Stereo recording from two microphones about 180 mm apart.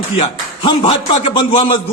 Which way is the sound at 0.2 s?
30° left (ahead or behind).